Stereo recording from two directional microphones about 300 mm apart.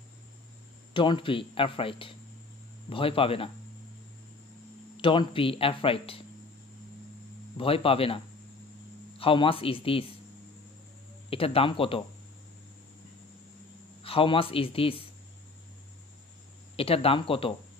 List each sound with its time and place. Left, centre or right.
0.9 s speech: centre
4.9 s speech: centre
7.5 s speech: centre
9.2 s speech: centre
11.2 s speech: centre
14.0 s speech: centre
16.7 s speech: centre